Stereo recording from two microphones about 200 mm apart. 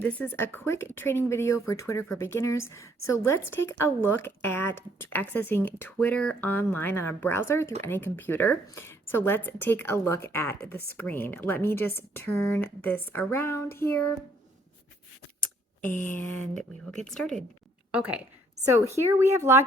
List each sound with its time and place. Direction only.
0.0 s speech: 10° left (ahead or behind)
15.8 s a woman's voice: 10° left (ahead or behind); by 19.6 s 15° right (ahead or behind)